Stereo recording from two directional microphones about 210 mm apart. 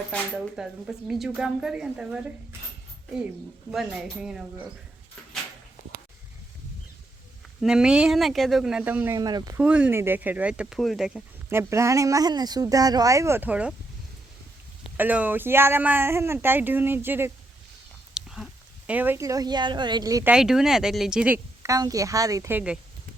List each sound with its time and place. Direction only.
0.1 s speech: 5° right (ahead or behind)
3.7 s speech: centre (ahead or behind)
7.6 s speech: 5° right (ahead or behind)
9.6 s speech: 5° right (ahead or behind)
14.9 s speech: 10° right (ahead or behind)
18.1 s chewing: centre (ahead or behind)
18.9 s speech: 10° right (ahead or behind)
20.3 s speech: centre (ahead or behind)